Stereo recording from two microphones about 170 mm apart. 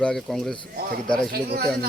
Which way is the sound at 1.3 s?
65° right (ahead or behind).